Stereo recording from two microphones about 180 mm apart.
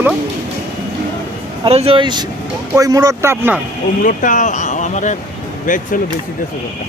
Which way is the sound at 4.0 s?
50° left (ahead or behind).